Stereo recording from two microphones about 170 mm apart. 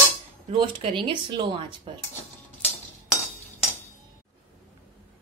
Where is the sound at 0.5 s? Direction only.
35° right (ahead or behind).